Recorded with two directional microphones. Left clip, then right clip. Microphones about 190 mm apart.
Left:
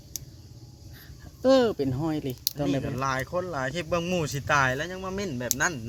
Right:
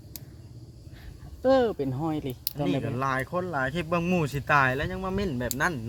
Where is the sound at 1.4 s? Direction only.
25° left (ahead or behind).